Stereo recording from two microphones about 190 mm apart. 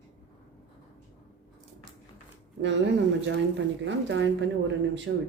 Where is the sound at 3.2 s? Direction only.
70° right (ahead or behind).